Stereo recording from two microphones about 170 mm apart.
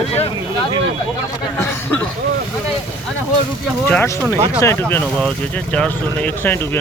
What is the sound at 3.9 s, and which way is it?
Speech, 10° left (ahead or behind).